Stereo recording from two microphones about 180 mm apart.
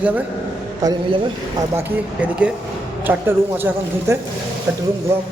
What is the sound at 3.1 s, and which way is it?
Speech, 10° right (ahead or behind).